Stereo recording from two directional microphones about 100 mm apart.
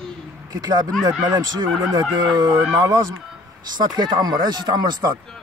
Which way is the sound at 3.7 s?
40° right (ahead or behind).